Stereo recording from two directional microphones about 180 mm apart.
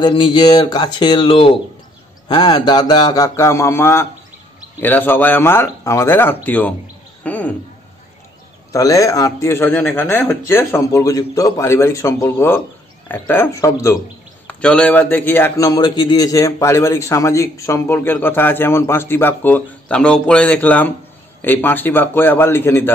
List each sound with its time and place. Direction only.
0.0 s a man's voice: 25° left (ahead or behind); by 7.5 s 10° left (ahead or behind)
8.7 s a man's voice: 20° left (ahead or behind)
14.5 s a man's voice: 5° left (ahead or behind)